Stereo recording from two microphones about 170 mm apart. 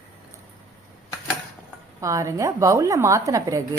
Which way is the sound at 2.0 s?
20° right (ahead or behind).